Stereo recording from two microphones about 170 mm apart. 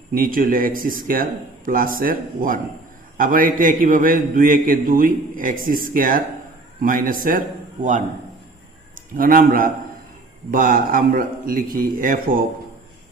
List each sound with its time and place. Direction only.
0.1 s a man's voice: 55° right (ahead or behind)
9.1 s a man's voice: 55° right (ahead or behind)